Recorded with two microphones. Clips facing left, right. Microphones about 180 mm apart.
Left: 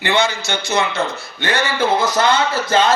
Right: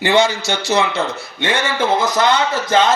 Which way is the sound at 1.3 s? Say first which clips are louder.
Even; 25° right (ahead or behind).